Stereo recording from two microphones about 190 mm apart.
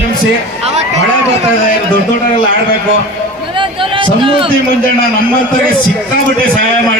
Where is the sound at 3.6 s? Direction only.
25° right (ahead or behind).